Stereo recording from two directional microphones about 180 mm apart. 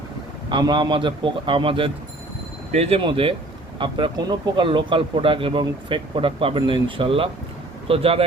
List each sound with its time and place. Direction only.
0.5 s speech: 25° right (ahead or behind)